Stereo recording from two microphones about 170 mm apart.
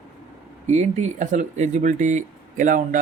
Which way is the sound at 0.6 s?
45° right (ahead or behind).